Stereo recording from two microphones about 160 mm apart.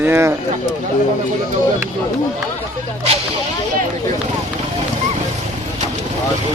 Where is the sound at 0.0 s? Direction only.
15° right (ahead or behind).